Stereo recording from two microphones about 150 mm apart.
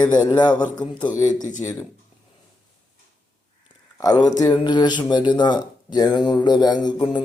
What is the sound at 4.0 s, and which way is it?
A man's voice, 25° left (ahead or behind).